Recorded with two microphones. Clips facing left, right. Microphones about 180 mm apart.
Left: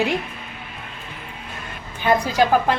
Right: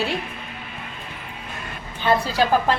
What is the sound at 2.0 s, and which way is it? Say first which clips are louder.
Speech: left 2 dB; 15° left (ahead or behind).